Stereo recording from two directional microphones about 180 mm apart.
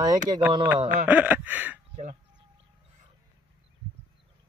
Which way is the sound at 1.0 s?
10° right (ahead or behind).